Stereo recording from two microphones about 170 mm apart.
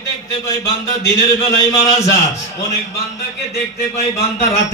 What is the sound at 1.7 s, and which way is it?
Speech, 20° left (ahead or behind).